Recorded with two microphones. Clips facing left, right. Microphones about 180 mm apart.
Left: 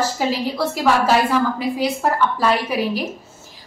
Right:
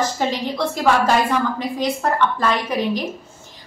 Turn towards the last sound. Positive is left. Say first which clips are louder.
# even
turn(degrees=5)  # may be behind; listen again after turning